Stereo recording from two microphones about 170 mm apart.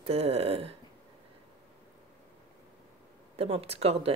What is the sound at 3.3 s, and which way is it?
Speech, 35° right (ahead or behind).